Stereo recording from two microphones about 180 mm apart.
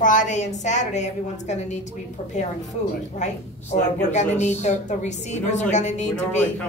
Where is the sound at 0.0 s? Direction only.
45° left (ahead or behind).